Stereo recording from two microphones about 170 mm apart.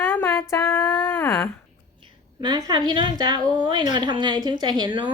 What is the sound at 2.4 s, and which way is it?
A woman's voice, 25° right (ahead or behind).